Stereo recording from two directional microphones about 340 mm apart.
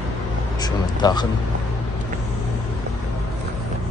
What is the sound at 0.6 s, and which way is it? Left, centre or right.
Speech, centre.